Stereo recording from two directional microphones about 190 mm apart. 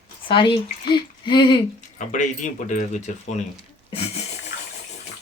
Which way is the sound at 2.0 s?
40° left (ahead or behind).